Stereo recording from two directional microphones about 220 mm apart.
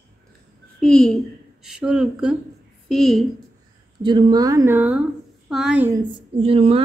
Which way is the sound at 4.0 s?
20° right (ahead or behind).